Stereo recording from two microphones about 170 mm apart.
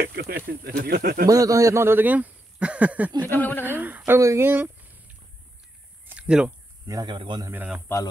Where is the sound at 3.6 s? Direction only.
10° right (ahead or behind).